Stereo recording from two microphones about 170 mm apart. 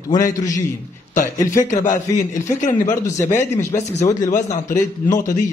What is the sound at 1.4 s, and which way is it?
Speech, 50° left (ahead or behind).